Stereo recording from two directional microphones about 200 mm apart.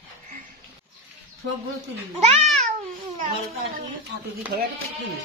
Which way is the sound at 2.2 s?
35° right (ahead or behind).